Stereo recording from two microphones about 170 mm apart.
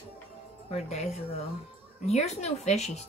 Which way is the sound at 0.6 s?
40° left (ahead or behind).